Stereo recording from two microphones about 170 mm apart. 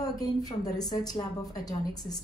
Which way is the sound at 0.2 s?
20° left (ahead or behind).